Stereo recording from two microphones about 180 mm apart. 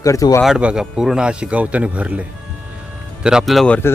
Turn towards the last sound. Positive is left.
turn(degrees=5)  # may be behind; listen again after turning